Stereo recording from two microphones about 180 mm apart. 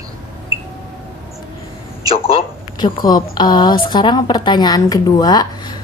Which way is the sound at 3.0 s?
20° left (ahead or behind).